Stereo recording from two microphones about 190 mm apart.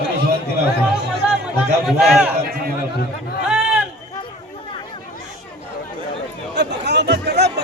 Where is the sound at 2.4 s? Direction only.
55° right (ahead or behind).